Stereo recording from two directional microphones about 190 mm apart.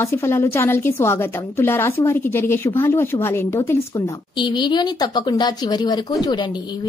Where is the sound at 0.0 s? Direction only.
15° left (ahead or behind).